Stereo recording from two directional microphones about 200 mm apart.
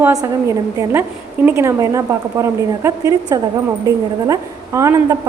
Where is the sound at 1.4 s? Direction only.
15° right (ahead or behind).